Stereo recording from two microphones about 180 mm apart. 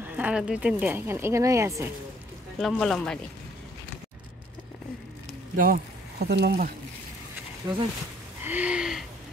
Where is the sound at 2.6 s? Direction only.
Centre (ahead or behind).